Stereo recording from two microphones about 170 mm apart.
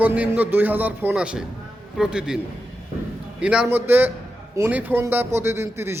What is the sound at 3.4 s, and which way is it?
Speech, 5° right (ahead or behind).